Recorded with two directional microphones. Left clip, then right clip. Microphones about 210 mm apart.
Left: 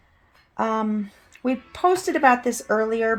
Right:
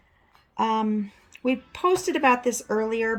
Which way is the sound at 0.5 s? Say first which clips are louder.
Even; 25° left (ahead or behind).